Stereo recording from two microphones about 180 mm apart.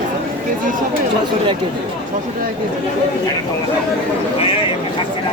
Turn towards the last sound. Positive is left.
turn(degrees=30)  # may be behind; listen again after turning